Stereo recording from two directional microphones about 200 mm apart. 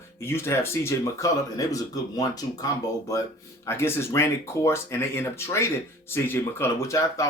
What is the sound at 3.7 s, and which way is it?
Speech, 15° left (ahead or behind).